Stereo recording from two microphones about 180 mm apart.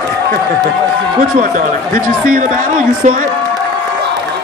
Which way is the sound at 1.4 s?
50° right (ahead or behind).